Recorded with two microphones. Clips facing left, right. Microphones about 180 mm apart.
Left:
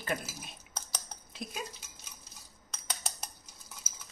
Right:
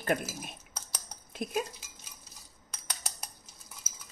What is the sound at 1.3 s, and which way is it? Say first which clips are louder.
Dishes: right 9 dB; 55° right (ahead or behind).